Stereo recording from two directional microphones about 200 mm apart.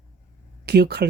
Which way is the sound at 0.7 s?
55° right (ahead or behind).